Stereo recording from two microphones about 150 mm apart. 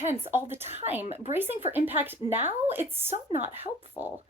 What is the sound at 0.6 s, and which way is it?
Speech, 45° right (ahead or behind).